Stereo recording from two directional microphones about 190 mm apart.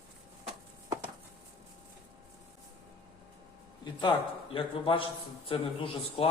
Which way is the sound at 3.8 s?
25° left (ahead or behind).